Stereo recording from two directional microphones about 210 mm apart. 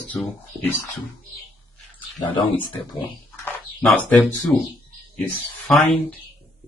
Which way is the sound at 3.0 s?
5° left (ahead or behind).